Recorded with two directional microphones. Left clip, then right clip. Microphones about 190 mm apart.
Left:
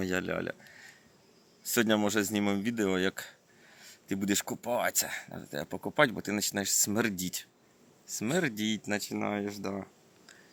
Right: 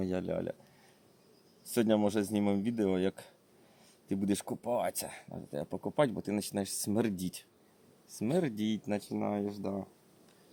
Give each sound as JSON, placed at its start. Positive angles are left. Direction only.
{"t": 0.0, "sound": "speech", "side_deg": -10}
{"t": 3.8, "sound": "a sound", "side_deg": -10}
{"t": 4.6, "sound": "speech", "side_deg": -15}